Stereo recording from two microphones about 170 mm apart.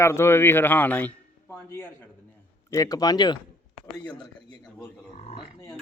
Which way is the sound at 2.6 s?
20° left (ahead or behind).